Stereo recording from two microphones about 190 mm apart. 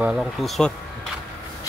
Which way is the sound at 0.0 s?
Centre (ahead or behind).